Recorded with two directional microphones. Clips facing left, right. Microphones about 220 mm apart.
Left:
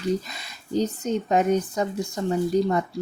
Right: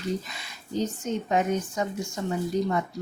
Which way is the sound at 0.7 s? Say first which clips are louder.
Left 4 dB; 35° left (ahead or behind).